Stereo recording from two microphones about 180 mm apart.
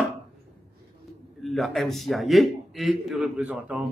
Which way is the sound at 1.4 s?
Centre (ahead or behind).